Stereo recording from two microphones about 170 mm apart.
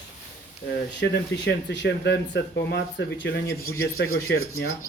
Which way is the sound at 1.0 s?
90° left.